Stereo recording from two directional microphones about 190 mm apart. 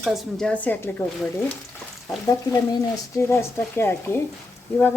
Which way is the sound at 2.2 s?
15° left (ahead or behind).